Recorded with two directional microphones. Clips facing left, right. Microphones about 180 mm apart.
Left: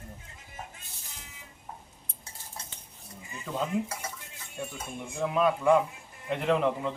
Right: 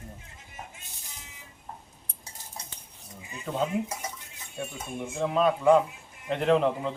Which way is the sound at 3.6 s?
20° right (ahead or behind).